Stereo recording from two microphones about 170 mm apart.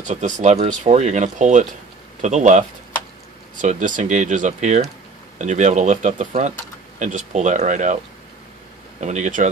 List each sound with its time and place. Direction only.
0.0 s speech: 45° right (ahead or behind)
3.6 s speech: 45° right (ahead or behind)
9.0 s speech: 45° right (ahead or behind)